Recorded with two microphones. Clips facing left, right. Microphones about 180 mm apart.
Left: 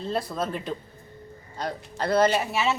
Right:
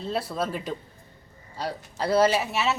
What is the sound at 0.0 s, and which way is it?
Speech, 5° right (ahead or behind).